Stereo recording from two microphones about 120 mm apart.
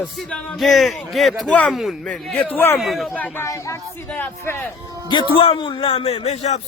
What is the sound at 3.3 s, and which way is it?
Speech, 25° left (ahead or behind).